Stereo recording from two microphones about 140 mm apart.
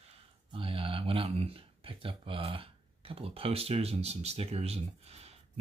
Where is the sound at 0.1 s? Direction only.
40° right (ahead or behind).